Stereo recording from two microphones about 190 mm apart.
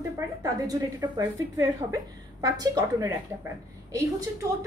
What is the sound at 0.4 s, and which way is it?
A woman's voice, 20° right (ahead or behind).